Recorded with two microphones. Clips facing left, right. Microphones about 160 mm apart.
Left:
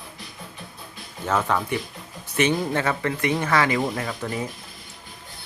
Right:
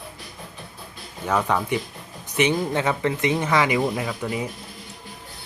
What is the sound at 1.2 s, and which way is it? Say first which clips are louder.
Speech: right 1 dB; 10° right (ahead or behind).